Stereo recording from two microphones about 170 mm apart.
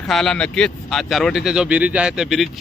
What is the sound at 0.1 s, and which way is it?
Speech, 5° left (ahead or behind).